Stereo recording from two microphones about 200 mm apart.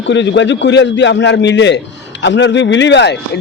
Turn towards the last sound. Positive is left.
turn(degrees=60)  # may be behind; listen again after turning